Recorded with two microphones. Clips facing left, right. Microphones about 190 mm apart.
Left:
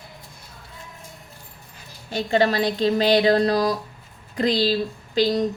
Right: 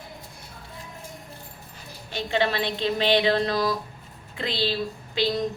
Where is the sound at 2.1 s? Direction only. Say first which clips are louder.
Left 5 dB; 40° left (ahead or behind).